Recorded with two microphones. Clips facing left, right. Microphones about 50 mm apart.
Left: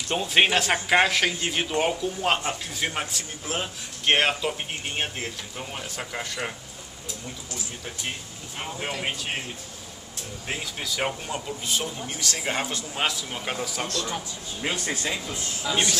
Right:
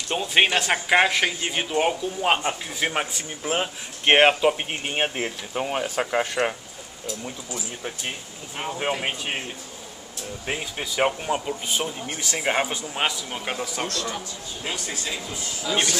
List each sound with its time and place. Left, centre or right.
0.1 s speech: centre; by 6.5 s right
8.5 s speech: centre
10.4 s speech: centre
15.7 s speech: centre